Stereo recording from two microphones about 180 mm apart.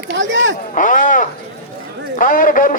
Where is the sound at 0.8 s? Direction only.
45° left (ahead or behind).